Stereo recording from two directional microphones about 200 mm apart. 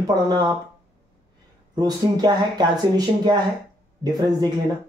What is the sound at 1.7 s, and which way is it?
Speech, 20° right (ahead or behind).